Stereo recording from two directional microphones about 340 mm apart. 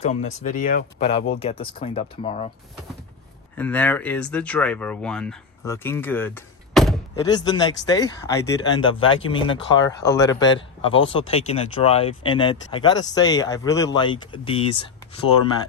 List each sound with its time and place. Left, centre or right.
0.0 s speech: left
3.6 s speech: centre